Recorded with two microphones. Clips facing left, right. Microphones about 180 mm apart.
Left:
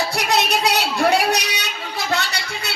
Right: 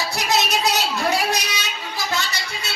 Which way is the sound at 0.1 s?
60° left (ahead or behind).